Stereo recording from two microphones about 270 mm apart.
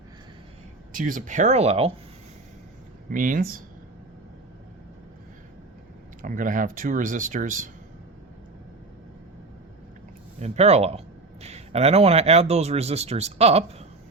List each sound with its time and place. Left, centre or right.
0.9 s speech: right
3.1 s speech: right
6.2 s speech: right
10.4 s speech: right